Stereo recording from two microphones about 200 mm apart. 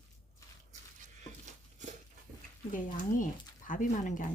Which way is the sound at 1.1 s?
35° right (ahead or behind).